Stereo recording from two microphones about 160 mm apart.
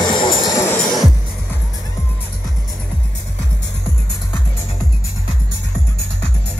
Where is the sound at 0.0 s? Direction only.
25° left (ahead or behind).